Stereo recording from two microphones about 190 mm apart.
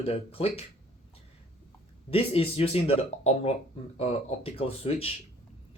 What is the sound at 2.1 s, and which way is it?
Speech, 30° left (ahead or behind).